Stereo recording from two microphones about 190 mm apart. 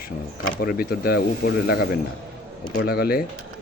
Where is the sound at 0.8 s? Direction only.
55° left (ahead or behind).